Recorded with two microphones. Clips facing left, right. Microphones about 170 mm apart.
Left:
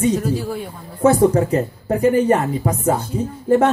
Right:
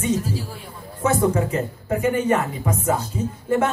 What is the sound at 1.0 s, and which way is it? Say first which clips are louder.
A man's voice: left 6 dB; 35° left (ahead or behind).